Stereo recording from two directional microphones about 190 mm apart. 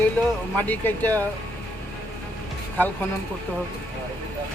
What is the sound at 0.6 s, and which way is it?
Speech, 10° left (ahead or behind).